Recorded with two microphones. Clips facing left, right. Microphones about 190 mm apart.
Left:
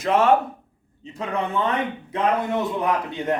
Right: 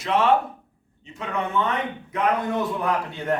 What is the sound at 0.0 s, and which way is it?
Speech, 45° left (ahead or behind).